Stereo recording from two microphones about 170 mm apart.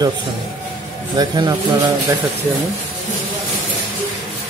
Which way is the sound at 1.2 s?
25° right (ahead or behind).